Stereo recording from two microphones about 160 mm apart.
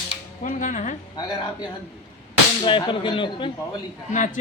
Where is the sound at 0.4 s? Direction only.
50° left (ahead or behind).